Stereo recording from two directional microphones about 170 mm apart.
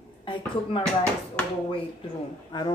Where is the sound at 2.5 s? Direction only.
25° left (ahead or behind).